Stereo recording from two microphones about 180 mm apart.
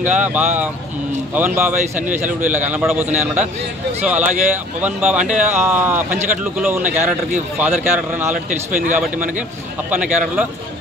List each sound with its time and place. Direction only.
0.0 s a man's voice: 10° right (ahead or behind)
5.2 s speech: 45° right (ahead or behind)
5.5 s a man's voice: 10° right (ahead or behind)
8.3 s speech: 45° right (ahead or behind)
9.8 s a man's voice: 10° right (ahead or behind)